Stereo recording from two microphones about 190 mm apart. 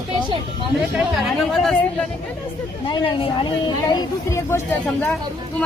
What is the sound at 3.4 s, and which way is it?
Speech, 20° left (ahead or behind).